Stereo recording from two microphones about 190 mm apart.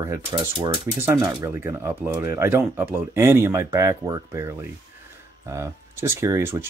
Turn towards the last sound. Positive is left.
turn(degrees=-15)  # may be behind; listen again after turning